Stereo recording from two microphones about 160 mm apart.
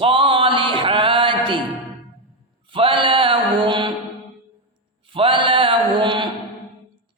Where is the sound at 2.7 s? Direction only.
35° right (ahead or behind).